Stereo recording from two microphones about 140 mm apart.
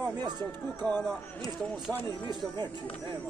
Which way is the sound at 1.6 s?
Centre (ahead or behind).